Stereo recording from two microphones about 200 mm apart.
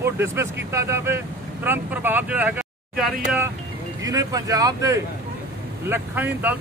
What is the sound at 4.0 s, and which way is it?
Speech, 20° right (ahead or behind).